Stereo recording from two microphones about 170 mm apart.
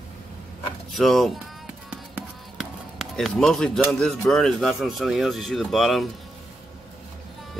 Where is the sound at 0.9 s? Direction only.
Centre (ahead or behind).